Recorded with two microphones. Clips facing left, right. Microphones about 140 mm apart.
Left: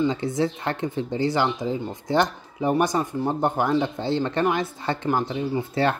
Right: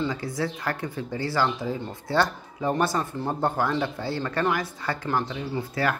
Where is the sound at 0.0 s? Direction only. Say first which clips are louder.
Left 5 dB; 25° left (ahead or behind).